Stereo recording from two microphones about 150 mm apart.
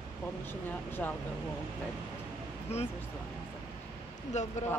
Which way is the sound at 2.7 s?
45° left (ahead or behind).